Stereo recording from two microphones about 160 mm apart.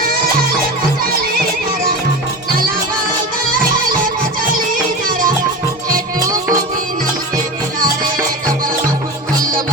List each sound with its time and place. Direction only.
3.5 s music: 60° right (ahead or behind)
6.1 s music: 20° right (ahead or behind)